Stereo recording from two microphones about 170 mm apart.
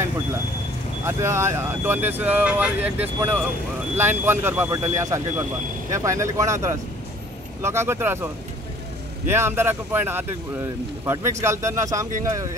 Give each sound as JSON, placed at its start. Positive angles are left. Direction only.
{"t": 1.0, "sound": "speech", "side_deg": -15}
{"t": 9.3, "sound": "speech", "side_deg": -15}